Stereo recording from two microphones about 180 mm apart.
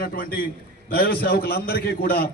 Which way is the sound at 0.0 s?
55° left (ahead or behind).